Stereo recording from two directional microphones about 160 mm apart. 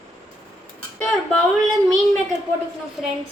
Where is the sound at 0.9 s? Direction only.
10° left (ahead or behind).